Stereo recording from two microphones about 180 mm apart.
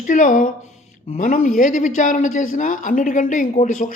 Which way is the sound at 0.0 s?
45° left (ahead or behind).